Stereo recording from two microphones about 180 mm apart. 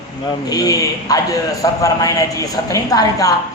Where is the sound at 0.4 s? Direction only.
20° left (ahead or behind).